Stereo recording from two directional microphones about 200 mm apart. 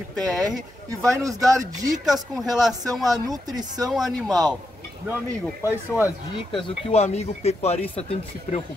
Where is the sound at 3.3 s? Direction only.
20° right (ahead or behind).